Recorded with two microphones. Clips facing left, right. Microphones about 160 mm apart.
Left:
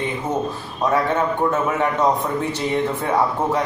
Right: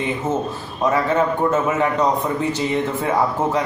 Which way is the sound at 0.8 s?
Centre (ahead or behind).